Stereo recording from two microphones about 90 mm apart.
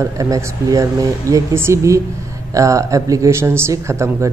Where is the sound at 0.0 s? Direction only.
35° right (ahead or behind).